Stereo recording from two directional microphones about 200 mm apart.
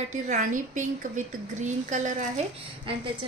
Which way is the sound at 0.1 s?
35° right (ahead or behind).